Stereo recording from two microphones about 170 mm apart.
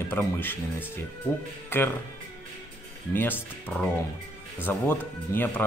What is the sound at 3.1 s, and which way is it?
Speech, 10° left (ahead or behind).